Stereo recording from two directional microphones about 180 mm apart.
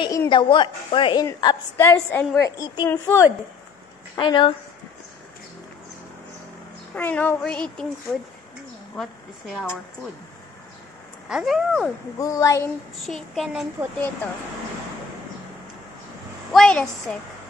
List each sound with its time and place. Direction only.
0.0 s a woman's voice: 20° left (ahead or behind)
2.6 s a woman's voice: 20° left (ahead or behind)
4.1 s a woman's voice: 25° left (ahead or behind)
7.0 s speech: 10° left (ahead or behind)
11.2 s speech: 5° right (ahead or behind)
12.2 s speech: 20° left (ahead or behind)
13.0 s speech: centre (ahead or behind)
16.5 s speech: 5° left (ahead or behind)